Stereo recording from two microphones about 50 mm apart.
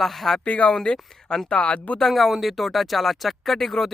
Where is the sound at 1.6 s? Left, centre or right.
Left.